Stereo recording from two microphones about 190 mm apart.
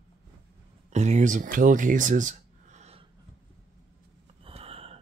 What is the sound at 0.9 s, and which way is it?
Speech, 40° right (ahead or behind).